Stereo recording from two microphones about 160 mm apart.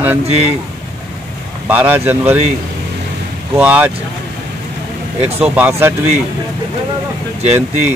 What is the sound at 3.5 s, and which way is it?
Speech, 10° right (ahead or behind).